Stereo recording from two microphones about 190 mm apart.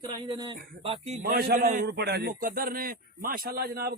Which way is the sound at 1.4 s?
50° right (ahead or behind).